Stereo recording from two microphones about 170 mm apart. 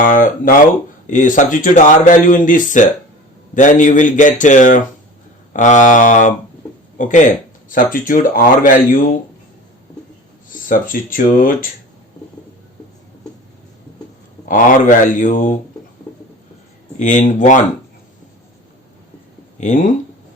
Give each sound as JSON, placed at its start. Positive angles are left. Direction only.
{"t": 0.0, "sound": "a sound", "side_deg": 50}
{"t": 1.1, "sound": "speech", "side_deg": 50}
{"t": 10.5, "sound": "speech", "side_deg": 50}
{"t": 14.4, "sound": "speech", "side_deg": 50}
{"t": 17.0, "sound": "speech", "side_deg": 45}
{"t": 19.5, "sound": "speech", "side_deg": 45}